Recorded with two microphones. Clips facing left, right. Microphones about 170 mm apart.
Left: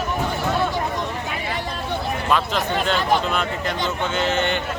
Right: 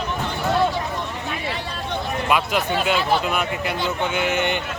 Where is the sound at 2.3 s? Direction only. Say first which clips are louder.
Right 1 dB; 10° right (ahead or behind).